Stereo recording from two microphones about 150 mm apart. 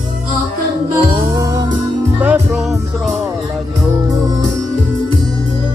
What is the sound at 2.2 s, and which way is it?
Music, 5° right (ahead or behind).